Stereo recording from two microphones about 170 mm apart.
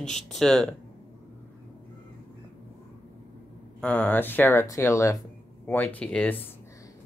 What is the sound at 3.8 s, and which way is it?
Speech, 10° left (ahead or behind).